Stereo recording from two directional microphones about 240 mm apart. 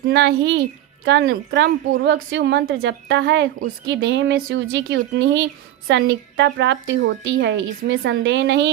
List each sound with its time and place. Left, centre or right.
0.1 s a woman's voice: right